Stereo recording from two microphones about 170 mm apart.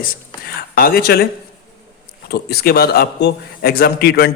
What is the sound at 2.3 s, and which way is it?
Speech, 70° left (ahead or behind).